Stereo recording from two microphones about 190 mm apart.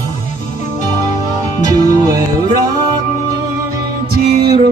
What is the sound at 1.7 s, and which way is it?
Music, 20° right (ahead or behind).